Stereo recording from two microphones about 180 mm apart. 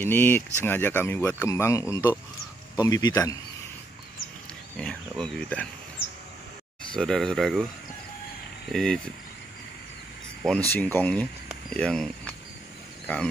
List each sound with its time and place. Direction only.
0.0 s speech: 10° left (ahead or behind)
4.7 s speech: 5° left (ahead or behind)
7.0 s speech: centre (ahead or behind)
8.7 s speech: centre (ahead or behind)
10.7 s speech: 10° left (ahead or behind)